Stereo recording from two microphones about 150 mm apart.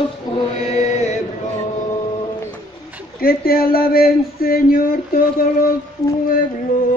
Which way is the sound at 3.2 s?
80° left.